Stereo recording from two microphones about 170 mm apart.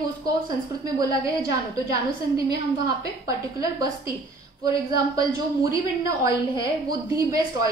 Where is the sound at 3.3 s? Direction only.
20° right (ahead or behind).